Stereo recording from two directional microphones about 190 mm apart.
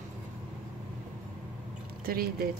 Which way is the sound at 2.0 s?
50° right (ahead or behind).